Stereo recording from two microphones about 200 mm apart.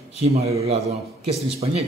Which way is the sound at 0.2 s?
30° right (ahead or behind).